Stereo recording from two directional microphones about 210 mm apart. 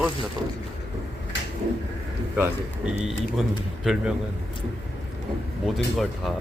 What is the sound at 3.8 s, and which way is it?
Speech, 5° right (ahead or behind).